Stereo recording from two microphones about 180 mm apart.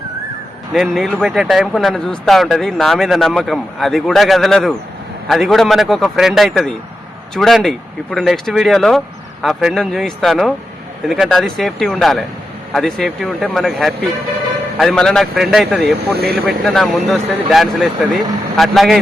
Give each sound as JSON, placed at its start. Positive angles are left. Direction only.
{"t": 0.7, "sound": "speech", "side_deg": 0}